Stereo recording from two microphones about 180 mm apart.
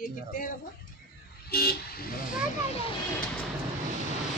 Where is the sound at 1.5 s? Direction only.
60° left (ahead or behind).